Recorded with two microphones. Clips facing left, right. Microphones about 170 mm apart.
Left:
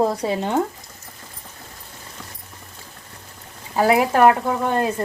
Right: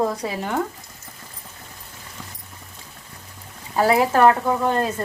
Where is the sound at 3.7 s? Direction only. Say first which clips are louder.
Left 1 dB; 15° left (ahead or behind).